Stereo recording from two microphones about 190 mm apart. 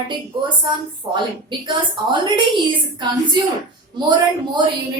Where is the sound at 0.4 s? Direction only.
25° right (ahead or behind).